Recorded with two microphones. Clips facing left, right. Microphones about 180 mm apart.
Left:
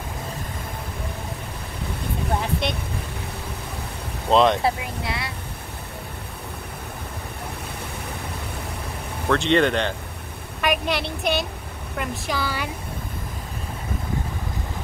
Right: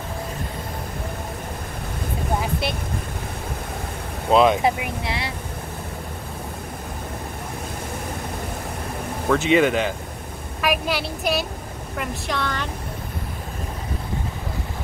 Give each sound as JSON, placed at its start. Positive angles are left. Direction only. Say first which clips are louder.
{"t": 2.6, "sound": "a woman's voice", "louder": "even", "side_deg": -5}
{"t": 4.3, "sound": "a woman's voice", "louder": "right 1 dB", "side_deg": -5}
{"t": 4.6, "sound": "speech", "louder": "right 2 dB", "side_deg": -20}
{"t": 9.3, "sound": "a woman's voice", "louder": "right 1 dB", "side_deg": -5}